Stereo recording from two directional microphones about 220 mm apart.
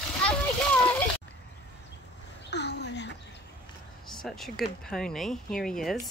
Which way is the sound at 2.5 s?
50° left (ahead or behind).